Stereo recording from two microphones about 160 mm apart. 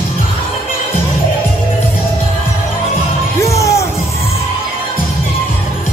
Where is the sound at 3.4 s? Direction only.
20° left (ahead or behind).